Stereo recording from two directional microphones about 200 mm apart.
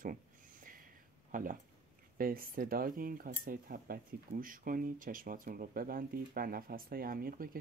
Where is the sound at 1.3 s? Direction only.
40° right (ahead or behind).